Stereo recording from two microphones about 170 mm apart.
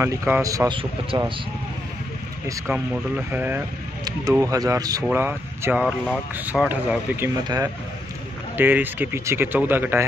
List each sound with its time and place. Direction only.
0.0 s speech: 15° right (ahead or behind)
2.7 s speech: 10° right (ahead or behind)